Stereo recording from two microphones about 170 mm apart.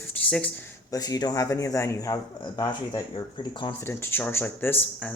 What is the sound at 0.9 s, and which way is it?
Speech, 20° left (ahead or behind).